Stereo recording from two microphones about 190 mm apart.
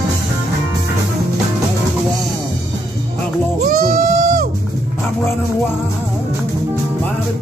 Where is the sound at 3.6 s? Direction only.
50° right (ahead or behind).